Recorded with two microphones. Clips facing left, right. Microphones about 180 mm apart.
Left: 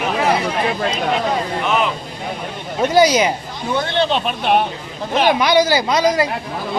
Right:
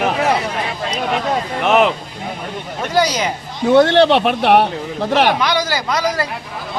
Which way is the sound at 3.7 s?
75° right (ahead or behind).